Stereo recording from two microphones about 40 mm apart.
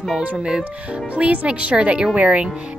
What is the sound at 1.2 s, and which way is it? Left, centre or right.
Speech, right.